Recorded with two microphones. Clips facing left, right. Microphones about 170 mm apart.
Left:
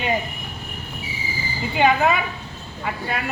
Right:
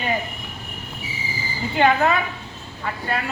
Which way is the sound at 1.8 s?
10° left (ahead or behind).